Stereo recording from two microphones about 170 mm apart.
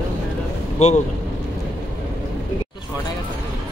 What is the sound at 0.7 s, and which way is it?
Speech, 40° left (ahead or behind).